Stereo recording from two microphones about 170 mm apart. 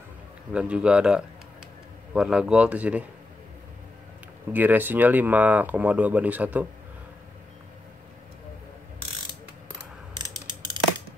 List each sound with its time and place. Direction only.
0.5 s speech: 5° right (ahead or behind)
4.5 s speech: 10° right (ahead or behind)
10.1 s mechanisms: 25° right (ahead or behind)